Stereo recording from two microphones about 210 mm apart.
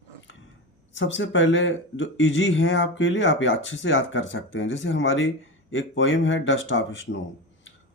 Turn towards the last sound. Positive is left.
turn(degrees=65)  # may be behind; listen again after turning